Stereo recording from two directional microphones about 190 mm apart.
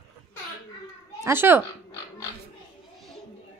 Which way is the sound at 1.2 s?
10° right (ahead or behind).